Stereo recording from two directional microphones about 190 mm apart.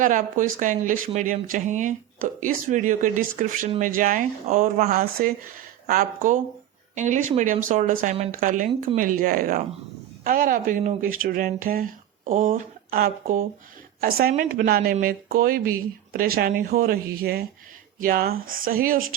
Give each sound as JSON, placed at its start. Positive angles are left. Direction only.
{"t": 0.0, "sound": "speech", "side_deg": -45}